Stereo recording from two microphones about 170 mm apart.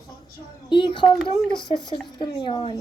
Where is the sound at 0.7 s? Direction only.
30° left (ahead or behind).